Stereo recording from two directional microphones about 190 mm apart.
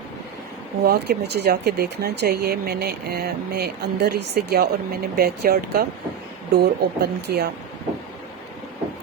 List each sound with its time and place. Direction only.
0.9 s speech: 55° right (ahead or behind)